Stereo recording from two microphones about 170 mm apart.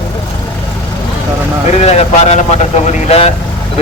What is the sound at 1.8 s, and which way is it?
Speech, 40° left (ahead or behind).